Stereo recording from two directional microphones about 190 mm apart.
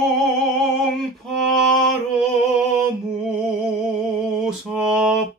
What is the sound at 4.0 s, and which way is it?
Mantra, centre (ahead or behind).